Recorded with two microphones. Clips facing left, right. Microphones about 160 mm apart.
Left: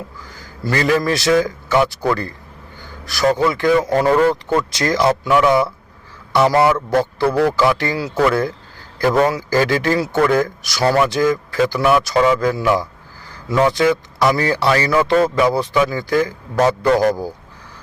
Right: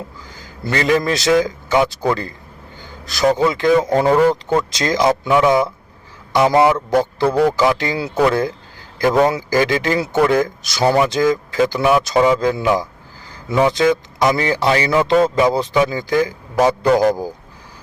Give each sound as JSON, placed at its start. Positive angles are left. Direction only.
{"t": 0.3, "sound": "speech", "side_deg": -25}
{"t": 3.3, "sound": "a man's voice", "side_deg": -20}